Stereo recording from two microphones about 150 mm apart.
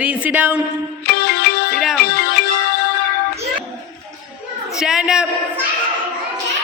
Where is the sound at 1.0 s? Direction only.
90° left.